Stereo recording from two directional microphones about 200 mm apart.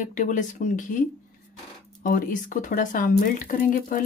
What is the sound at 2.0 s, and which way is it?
A woman's voice, 40° left (ahead or behind).